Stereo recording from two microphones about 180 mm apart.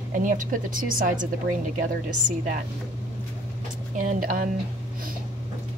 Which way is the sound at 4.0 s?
45° right (ahead or behind).